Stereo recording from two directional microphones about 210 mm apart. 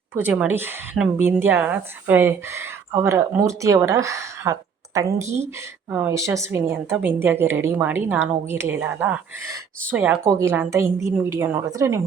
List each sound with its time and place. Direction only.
0.1 s speech: 10° right (ahead or behind)
5.9 s speech: 10° right (ahead or behind)